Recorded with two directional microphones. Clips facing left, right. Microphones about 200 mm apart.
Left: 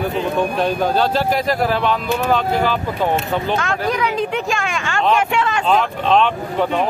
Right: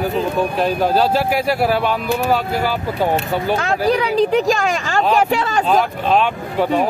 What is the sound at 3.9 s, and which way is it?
Speech, 35° right (ahead or behind).